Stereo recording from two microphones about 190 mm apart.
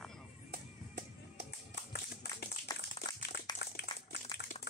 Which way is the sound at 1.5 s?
60° left (ahead or behind).